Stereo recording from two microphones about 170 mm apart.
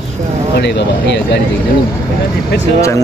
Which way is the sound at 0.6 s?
85° left.